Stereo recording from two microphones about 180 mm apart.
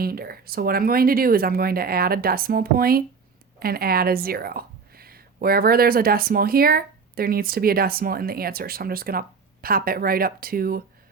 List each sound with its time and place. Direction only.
0.0 s a woman's voice: 55° right (ahead or behind)